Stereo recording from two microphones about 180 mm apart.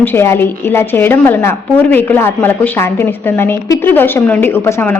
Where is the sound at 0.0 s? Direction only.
15° left (ahead or behind).